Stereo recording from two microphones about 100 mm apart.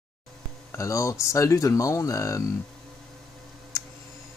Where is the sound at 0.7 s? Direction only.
30° left (ahead or behind).